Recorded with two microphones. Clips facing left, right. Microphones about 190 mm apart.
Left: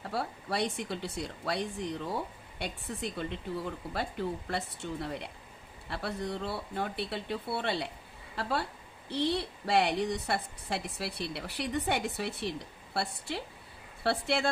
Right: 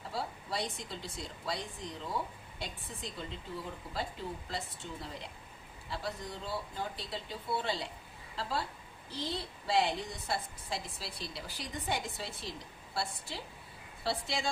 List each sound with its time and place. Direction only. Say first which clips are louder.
0.1 s a woman's voice: left 4 dB; 65° left (ahead or behind)